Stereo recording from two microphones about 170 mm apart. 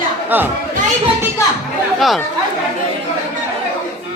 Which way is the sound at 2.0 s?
Centre (ahead or behind).